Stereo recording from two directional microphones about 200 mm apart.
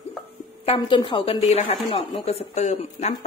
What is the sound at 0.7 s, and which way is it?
A woman's voice, 25° left (ahead or behind).